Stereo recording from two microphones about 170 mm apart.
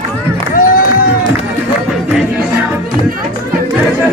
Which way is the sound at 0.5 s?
55° left (ahead or behind).